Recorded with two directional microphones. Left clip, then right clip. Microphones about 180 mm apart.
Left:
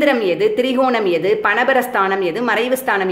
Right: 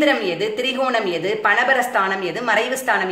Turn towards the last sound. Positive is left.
turn(degrees=55)  # may be behind; listen again after turning